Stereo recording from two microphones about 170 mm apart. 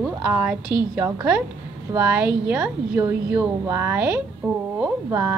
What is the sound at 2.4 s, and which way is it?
Speech, 5° right (ahead or behind).